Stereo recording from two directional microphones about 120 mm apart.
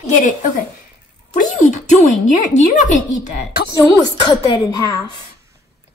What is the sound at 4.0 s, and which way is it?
A woman's voice, 35° left (ahead or behind).